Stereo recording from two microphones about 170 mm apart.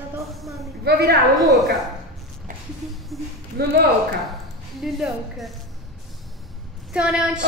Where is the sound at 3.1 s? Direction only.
Centre (ahead or behind).